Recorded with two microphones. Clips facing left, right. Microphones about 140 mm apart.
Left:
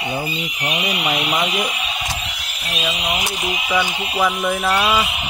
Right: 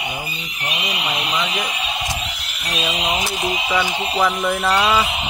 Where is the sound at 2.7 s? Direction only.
35° right (ahead or behind).